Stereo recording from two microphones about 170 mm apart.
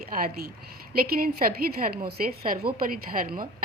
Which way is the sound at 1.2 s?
60° right (ahead or behind).